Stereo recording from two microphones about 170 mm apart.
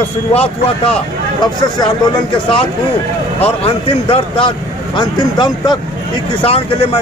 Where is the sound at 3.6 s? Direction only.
35° left (ahead or behind).